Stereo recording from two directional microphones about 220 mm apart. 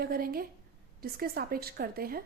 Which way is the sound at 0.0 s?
45° right (ahead or behind).